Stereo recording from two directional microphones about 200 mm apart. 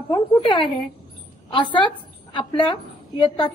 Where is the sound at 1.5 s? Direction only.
25° left (ahead or behind).